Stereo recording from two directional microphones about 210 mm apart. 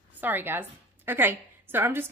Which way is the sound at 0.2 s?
10° right (ahead or behind).